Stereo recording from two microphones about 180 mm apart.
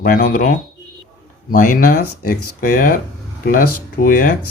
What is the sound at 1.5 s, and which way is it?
Speech, 50° left (ahead or behind).